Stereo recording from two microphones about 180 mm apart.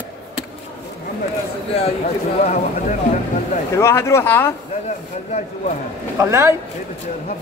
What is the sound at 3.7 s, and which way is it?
Speech, 15° left (ahead or behind).